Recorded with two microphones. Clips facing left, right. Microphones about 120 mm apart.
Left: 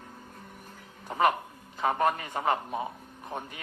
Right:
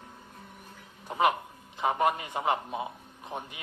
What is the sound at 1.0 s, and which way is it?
A man's voice, 15° right (ahead or behind).